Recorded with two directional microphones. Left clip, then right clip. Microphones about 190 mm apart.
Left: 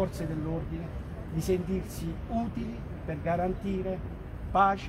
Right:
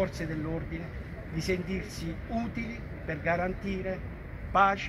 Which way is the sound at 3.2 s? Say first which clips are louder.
Even; 25° left (ahead or behind).